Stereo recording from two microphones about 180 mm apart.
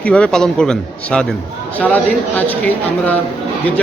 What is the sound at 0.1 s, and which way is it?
A man's voice, 5° left (ahead or behind).